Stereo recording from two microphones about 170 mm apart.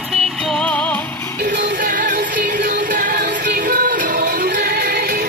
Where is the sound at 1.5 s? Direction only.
85° right.